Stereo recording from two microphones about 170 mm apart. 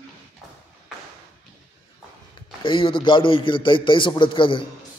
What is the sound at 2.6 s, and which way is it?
A man's voice, 30° left (ahead or behind).